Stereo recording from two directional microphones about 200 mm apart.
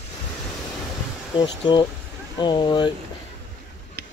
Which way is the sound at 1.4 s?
20° left (ahead or behind).